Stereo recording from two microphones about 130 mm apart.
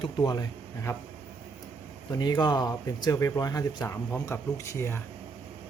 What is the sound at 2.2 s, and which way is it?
Speech, 30° left (ahead or behind).